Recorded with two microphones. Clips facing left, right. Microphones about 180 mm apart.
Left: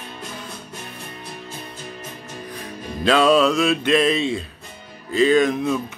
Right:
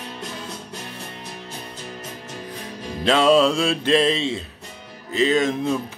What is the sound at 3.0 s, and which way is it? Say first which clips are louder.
Music: even; 25° right (ahead or behind).